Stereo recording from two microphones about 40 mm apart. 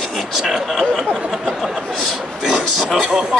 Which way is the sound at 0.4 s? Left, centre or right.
Centre.